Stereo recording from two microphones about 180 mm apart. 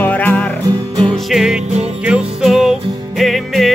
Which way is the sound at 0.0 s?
10° left (ahead or behind).